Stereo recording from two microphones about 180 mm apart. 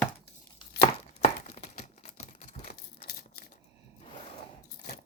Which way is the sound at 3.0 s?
55° left (ahead or behind).